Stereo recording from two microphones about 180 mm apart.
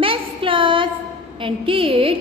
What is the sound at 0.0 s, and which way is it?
Child singing, 30° right (ahead or behind).